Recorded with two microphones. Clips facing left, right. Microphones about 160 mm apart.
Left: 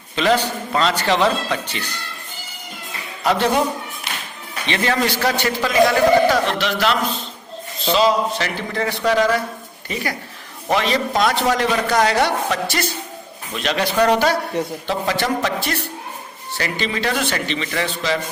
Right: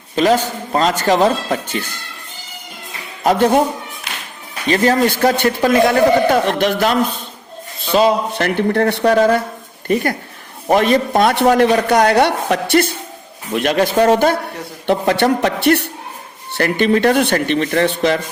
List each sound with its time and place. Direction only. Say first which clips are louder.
0.2 s a man's voice: right 4 dB; 40° right (ahead or behind)
3.2 s a man's voice: right 5 dB; 45° right (ahead or behind)
4.6 s a man's voice: right 6 dB; 40° right (ahead or behind)
14.8 s speech: right 10 dB; 65° right (ahead or behind)